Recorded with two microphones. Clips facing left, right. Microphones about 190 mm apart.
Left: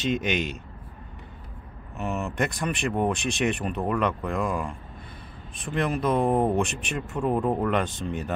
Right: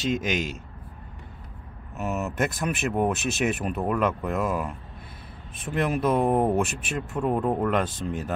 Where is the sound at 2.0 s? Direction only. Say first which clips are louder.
Right 1 dB; 5° right (ahead or behind).